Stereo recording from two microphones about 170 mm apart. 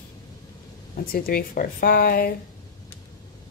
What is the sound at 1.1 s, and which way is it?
Speech, 60° left (ahead or behind).